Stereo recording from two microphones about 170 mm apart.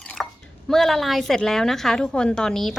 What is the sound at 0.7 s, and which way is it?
A woman's voice, centre (ahead or behind).